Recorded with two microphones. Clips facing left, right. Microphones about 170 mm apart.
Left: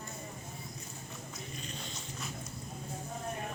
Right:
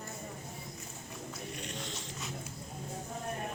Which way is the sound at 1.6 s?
85° right.